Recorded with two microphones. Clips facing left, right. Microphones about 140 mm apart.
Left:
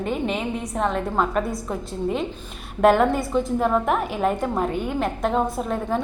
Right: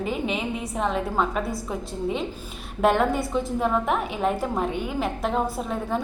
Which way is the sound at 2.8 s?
Centre (ahead or behind).